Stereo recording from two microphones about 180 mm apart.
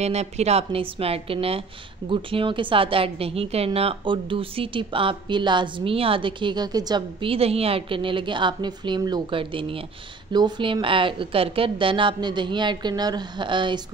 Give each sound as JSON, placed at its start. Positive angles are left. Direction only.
{"t": 0.0, "sound": "a woman's voice", "side_deg": -35}